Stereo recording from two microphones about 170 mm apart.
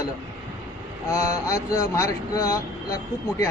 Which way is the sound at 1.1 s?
20° left (ahead or behind).